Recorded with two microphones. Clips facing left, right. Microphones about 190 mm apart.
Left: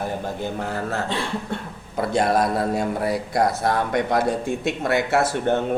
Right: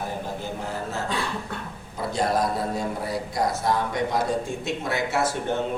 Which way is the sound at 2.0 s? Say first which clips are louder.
Left 4 dB; 65° left (ahead or behind).